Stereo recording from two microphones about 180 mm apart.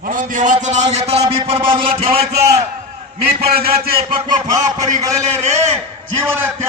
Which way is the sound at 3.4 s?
55° right (ahead or behind).